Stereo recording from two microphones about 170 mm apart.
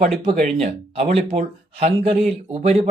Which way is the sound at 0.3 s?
45° right (ahead or behind).